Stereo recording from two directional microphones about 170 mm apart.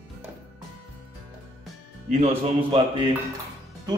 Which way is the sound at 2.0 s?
40° right (ahead or behind).